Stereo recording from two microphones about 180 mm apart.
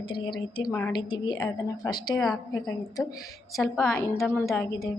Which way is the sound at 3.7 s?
10° left (ahead or behind).